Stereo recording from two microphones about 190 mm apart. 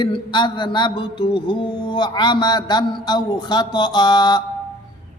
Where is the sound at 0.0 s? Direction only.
25° left (ahead or behind).